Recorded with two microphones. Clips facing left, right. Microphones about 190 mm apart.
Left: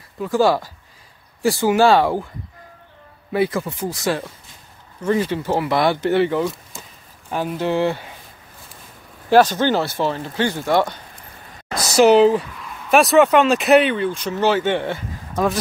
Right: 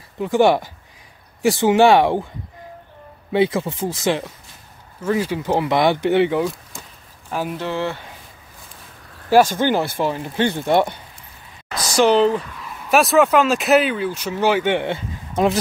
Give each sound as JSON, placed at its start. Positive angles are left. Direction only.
{"t": 0.2, "sound": "speech", "side_deg": -20}
{"t": 3.3, "sound": "speech", "side_deg": -20}
{"t": 5.0, "sound": "speech", "side_deg": -10}
{"t": 7.5, "sound": "speech", "side_deg": 15}
{"t": 9.6, "sound": "speech", "side_deg": -15}
{"t": 11.9, "sound": "speech", "side_deg": 10}